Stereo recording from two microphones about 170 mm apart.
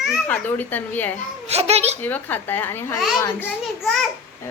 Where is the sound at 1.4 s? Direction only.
40° right (ahead or behind).